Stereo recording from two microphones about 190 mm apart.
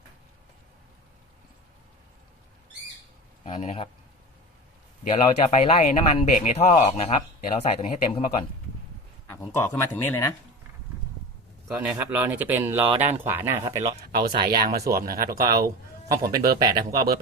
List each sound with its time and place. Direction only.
3.4 s speech: 30° left (ahead or behind)
5.1 s speech: 35° left (ahead or behind)
9.2 s speech: 10° left (ahead or behind)
11.7 s speech: 5° right (ahead or behind)
14.1 s speech: 55° right (ahead or behind)
16.6 s speech: 20° right (ahead or behind)